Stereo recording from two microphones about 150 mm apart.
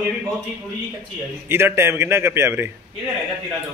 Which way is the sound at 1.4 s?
15° right (ahead or behind).